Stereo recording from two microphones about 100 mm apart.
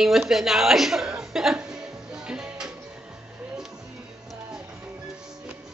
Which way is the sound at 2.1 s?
5° right (ahead or behind).